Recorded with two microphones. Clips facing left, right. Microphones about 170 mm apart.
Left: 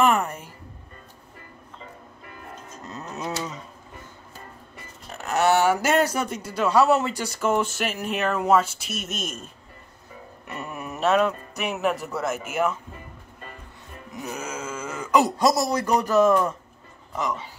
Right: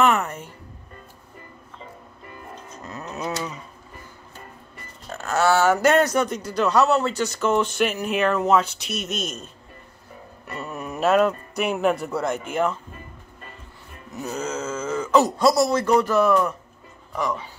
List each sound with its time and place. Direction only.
2.8 s livestock: 25° left (ahead or behind)
3.2 s a sound: 25° left (ahead or behind)
5.2 s a man's voice: 20° left (ahead or behind)
10.5 s speech: 15° left (ahead or behind)
14.1 s a sound: 10° left (ahead or behind)
15.9 s speech: 40° left (ahead or behind)
17.2 s speech: 20° left (ahead or behind)